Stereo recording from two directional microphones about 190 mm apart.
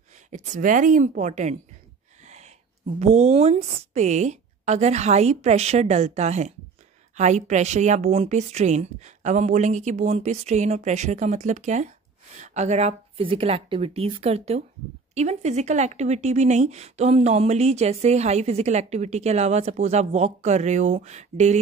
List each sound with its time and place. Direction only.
0.3 s speech: 45° right (ahead or behind)
2.2 s a sound: 35° right (ahead or behind)
3.0 s speech: 35° right (ahead or behind)